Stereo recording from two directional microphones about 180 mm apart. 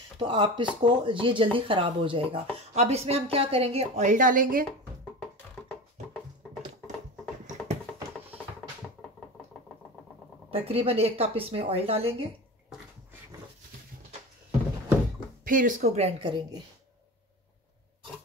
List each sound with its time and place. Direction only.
0.2 s speech: 25° right (ahead or behind); by 4.6 s 50° right (ahead or behind)
10.5 s speech: 30° right (ahead or behind)
15.4 s speech: 45° right (ahead or behind); by 16.4 s 30° right (ahead or behind)